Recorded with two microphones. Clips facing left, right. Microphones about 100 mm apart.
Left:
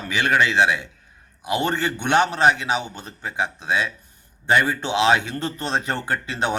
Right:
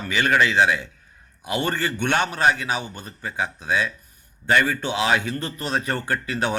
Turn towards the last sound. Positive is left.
turn(degrees=25)  # may be behind; listen again after turning